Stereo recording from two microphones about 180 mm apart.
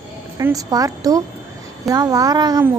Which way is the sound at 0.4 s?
20° right (ahead or behind).